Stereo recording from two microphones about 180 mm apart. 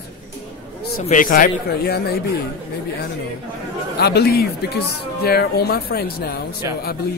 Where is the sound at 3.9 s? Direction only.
65° left (ahead or behind).